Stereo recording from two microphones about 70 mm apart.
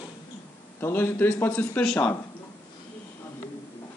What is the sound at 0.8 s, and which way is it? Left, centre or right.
A man's voice, left.